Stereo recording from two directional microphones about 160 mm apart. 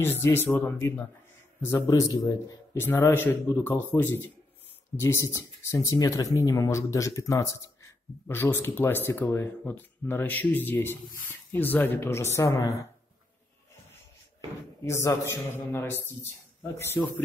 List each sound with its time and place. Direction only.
0.0 s speech: 15° left (ahead or behind)
14.9 s speech: 15° left (ahead or behind)